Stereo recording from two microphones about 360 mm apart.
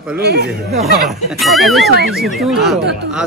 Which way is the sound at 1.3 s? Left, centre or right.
Centre.